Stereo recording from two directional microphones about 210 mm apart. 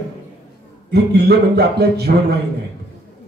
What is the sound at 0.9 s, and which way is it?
Speech, 50° right (ahead or behind).